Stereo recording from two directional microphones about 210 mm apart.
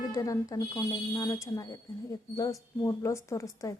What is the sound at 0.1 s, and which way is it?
Speech, 15° left (ahead or behind).